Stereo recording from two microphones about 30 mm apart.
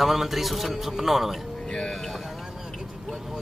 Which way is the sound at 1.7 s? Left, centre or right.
Left.